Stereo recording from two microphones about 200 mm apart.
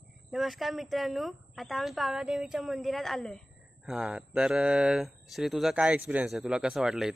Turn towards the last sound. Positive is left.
turn(degrees=-5)  # may be behind; listen again after turning